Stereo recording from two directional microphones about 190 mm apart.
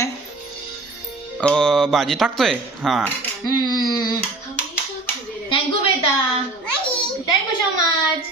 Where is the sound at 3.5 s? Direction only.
20° left (ahead or behind).